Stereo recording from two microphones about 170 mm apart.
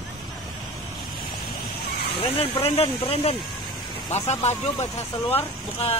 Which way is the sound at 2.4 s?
35° left (ahead or behind).